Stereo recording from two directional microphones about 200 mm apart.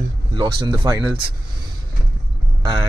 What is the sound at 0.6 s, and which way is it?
Speech, 20° right (ahead or behind).